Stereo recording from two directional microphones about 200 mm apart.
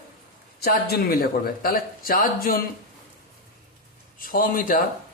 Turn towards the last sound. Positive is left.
turn(degrees=45)  # may be behind; listen again after turning